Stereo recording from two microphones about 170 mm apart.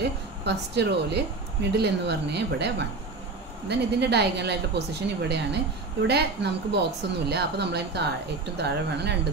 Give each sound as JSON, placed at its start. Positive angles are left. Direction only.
{"t": 0.0, "sound": "a woman's voice", "side_deg": -80}